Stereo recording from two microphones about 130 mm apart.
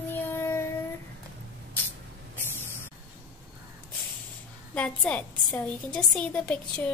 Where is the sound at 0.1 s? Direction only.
15° left (ahead or behind).